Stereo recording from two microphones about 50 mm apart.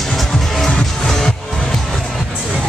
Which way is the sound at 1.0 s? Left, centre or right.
Centre.